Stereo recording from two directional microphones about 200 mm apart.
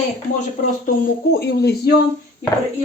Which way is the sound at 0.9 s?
55° left (ahead or behind).